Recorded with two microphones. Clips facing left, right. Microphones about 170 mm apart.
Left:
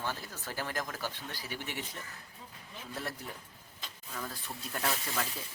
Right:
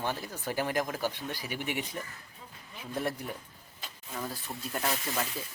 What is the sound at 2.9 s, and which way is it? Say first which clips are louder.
Speech: right 7 dB; 15° right (ahead or behind).